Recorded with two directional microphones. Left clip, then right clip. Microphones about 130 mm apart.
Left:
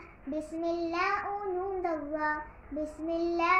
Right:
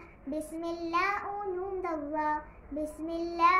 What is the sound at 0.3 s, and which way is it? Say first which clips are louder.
Child singing: left 3 dB; 45° right (ahead or behind).